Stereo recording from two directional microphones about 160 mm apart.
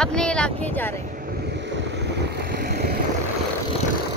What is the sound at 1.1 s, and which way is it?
Vehicle, 65° right (ahead or behind).